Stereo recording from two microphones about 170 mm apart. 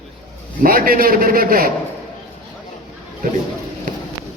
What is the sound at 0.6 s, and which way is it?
A man's voice, 55° right (ahead or behind).